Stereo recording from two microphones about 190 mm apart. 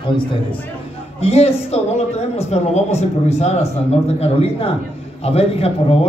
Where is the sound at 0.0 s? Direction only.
25° left (ahead or behind).